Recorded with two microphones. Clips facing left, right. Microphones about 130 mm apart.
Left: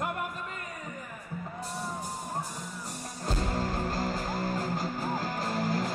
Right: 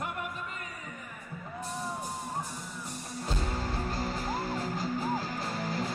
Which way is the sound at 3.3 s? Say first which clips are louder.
Left 4 dB; 45° left (ahead or behind).